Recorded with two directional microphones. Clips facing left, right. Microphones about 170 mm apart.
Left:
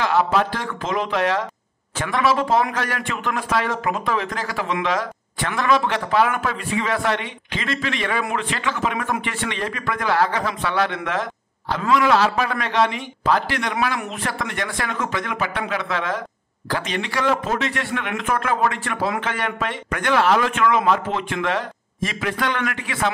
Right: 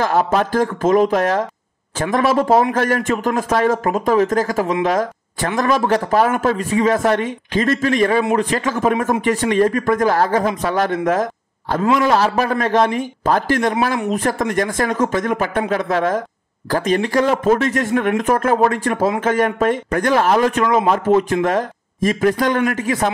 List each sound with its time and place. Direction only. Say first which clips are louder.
0.0 s a man's voice: right 3 dB; 45° right (ahead or behind)